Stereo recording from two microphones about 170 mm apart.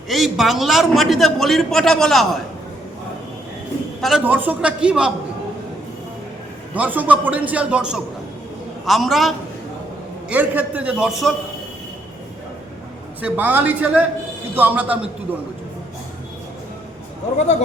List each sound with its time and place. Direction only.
0.1 s a man's voice: centre (ahead or behind)
4.0 s a man's voice: 5° right (ahead or behind)
6.7 s a man's voice: 10° right (ahead or behind)
13.2 s a man's voice: 10° right (ahead or behind)
17.3 s speech: 40° left (ahead or behind)